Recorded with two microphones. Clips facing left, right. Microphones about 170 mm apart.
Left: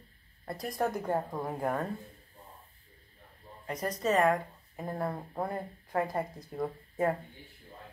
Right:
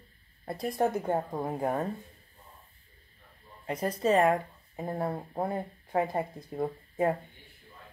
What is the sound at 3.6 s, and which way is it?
Speech, 30° right (ahead or behind).